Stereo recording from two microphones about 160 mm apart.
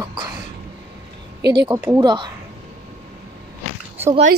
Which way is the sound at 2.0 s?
25° right (ahead or behind).